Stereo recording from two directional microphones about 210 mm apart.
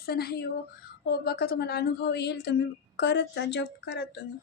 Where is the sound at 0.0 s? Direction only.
50° left (ahead or behind).